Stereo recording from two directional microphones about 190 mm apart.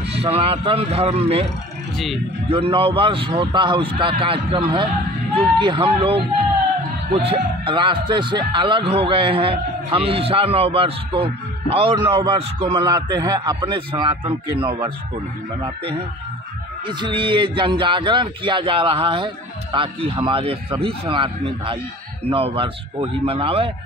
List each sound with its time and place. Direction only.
0.1 s speech: 30° right (ahead or behind)
2.5 s a man's voice: 30° right (ahead or behind)